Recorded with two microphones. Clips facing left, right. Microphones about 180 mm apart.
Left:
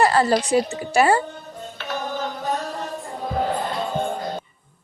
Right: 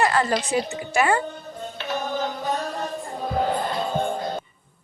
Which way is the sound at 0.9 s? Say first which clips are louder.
Left 3 dB; 35° left (ahead or behind).